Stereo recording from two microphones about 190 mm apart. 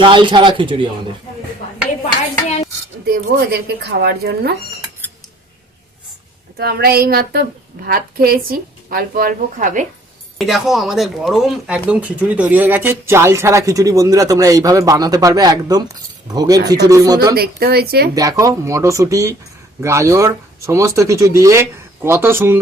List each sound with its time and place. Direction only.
0.0 s speech: 25° right (ahead or behind)
3.3 s speech: 60° right (ahead or behind)
6.6 s a woman's voice: 55° right (ahead or behind)
10.3 s speech: centre (ahead or behind); by 17.2 s 20° right (ahead or behind)
17.3 s speech: 55° right (ahead or behind)
18.1 s speech: 20° right (ahead or behind)